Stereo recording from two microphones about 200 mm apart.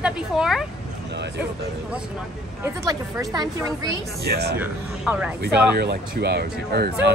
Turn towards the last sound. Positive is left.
turn(degrees=-55)  # may be behind; listen again after turning